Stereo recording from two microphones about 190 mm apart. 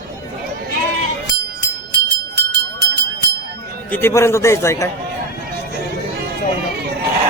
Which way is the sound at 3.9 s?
10° left (ahead or behind).